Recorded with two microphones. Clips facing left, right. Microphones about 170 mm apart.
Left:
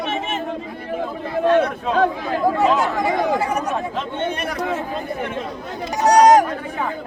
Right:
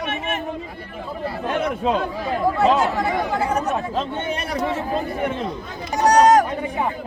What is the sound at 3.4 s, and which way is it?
Speech, 10° left (ahead or behind).